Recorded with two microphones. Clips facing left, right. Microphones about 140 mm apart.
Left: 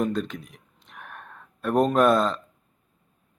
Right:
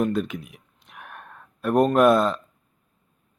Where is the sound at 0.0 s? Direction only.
5° right (ahead or behind).